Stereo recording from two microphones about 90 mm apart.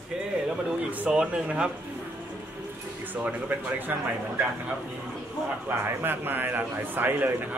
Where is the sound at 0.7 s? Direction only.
15° right (ahead or behind).